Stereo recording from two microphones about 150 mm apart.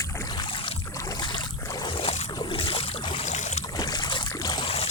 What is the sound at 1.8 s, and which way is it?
Boat, 40° left (ahead or behind).